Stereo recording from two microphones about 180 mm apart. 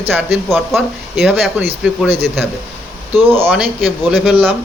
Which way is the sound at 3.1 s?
10° right (ahead or behind).